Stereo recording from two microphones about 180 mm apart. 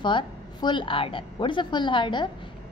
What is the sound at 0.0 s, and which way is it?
A woman's voice, 25° left (ahead or behind).